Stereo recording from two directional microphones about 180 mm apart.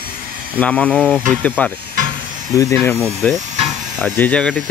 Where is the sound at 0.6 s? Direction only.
5° left (ahead or behind).